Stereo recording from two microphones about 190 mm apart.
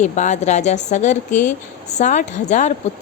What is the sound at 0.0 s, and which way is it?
A woman's voice, 40° left (ahead or behind).